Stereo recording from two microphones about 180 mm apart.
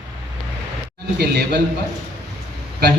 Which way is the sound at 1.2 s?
65° right (ahead or behind).